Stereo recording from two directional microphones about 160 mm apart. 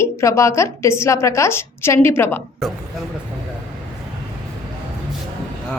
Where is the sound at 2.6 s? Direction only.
Centre (ahead or behind).